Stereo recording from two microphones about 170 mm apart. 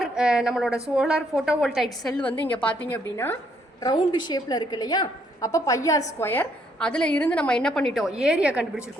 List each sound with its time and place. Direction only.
0.0 s a woman's voice: 5° right (ahead or behind); by 3.3 s 15° left (ahead or behind)
3.8 s a woman's voice: 25° left (ahead or behind); by 8.8 s 5° right (ahead or behind)